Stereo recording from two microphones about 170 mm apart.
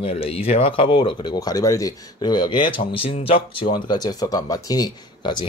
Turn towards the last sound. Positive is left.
turn(degrees=25)  # may be behind; listen again after turning